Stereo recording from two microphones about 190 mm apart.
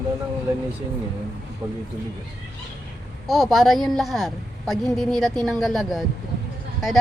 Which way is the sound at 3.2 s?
Centre (ahead or behind).